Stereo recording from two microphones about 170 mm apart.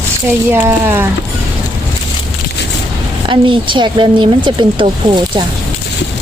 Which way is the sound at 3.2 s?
30° right (ahead or behind).